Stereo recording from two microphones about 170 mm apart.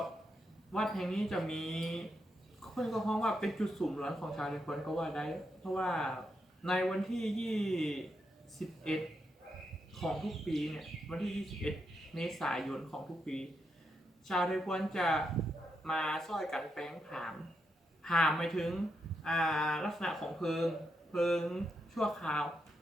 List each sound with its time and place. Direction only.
0.7 s speech: centre (ahead or behind)